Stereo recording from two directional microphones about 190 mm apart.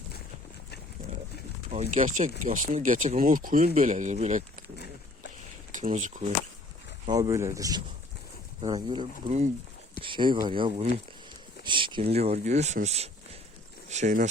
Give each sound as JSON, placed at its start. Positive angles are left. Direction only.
{"t": 1.7, "sound": "speech", "side_deg": -40}
{"t": 5.7, "sound": "speech", "side_deg": -40}
{"t": 7.1, "sound": "speech", "side_deg": -15}